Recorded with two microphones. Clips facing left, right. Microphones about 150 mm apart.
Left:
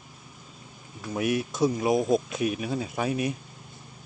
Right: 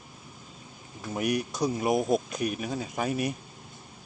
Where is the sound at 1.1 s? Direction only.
Centre (ahead or behind).